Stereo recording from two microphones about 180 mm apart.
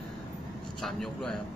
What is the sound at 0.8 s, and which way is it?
Speech, centre (ahead or behind).